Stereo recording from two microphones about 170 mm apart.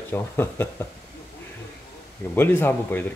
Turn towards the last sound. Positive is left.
turn(degrees=10)  # may be behind; listen again after turning